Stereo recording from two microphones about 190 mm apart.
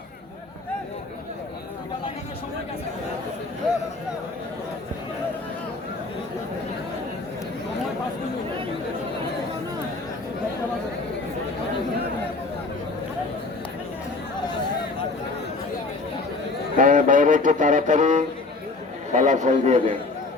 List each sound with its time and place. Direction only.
16.7 s music: 45° right (ahead or behind)
19.1 s a man's voice: 40° right (ahead or behind)